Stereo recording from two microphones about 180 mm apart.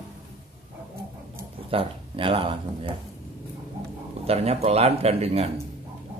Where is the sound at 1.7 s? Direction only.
30° right (ahead or behind).